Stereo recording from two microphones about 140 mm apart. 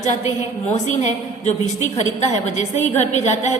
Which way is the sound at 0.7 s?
55° left (ahead or behind).